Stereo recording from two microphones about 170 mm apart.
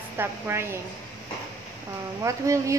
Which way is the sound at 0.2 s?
15° right (ahead or behind).